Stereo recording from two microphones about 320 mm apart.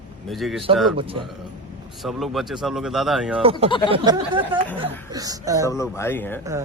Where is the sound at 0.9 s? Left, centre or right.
Centre.